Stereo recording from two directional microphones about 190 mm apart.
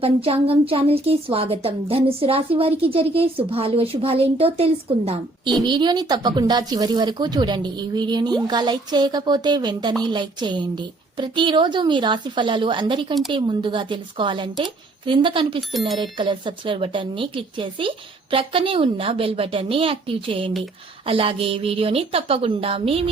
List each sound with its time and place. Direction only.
0.0 s a woman's voice: 30° right (ahead or behind)